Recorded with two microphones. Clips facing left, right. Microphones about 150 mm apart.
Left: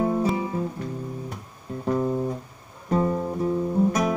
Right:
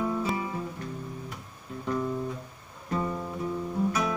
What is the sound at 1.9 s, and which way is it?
Music, 35° left (ahead or behind).